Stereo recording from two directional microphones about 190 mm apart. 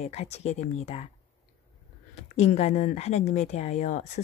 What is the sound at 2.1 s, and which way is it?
Speech, 35° left (ahead or behind).